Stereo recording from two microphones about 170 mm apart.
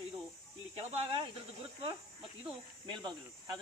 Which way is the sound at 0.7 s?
35° right (ahead or behind).